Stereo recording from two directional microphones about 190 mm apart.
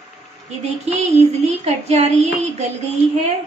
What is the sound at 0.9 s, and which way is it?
A woman's voice, 35° right (ahead or behind).